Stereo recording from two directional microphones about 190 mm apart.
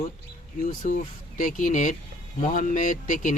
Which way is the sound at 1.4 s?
45° left (ahead or behind).